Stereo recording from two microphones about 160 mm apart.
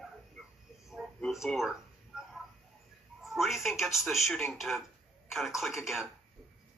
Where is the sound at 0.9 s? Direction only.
Centre (ahead or behind).